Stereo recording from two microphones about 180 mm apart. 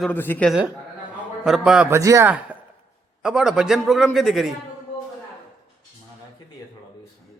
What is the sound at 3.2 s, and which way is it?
A man's voice, 5° right (ahead or behind).